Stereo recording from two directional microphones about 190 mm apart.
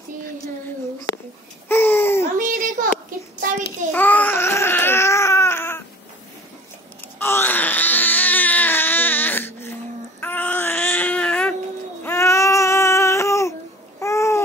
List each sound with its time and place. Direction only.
1.7 s babbling: 10° left (ahead or behind)
2.3 s a sound: 45° right (ahead or behind)
3.9 s baby cry: 10° left (ahead or behind)
7.2 s baby cry: 10° left (ahead or behind)
10.2 s a sound: 10° left (ahead or behind)
12.0 s baby cry: 15° left (ahead or behind)
13.9 s babbling: 15° left (ahead or behind)